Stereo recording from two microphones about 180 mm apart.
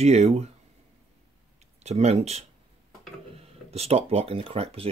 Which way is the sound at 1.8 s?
35° right (ahead or behind).